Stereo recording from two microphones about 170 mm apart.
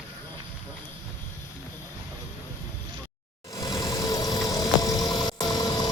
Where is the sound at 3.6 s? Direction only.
25° left (ahead or behind).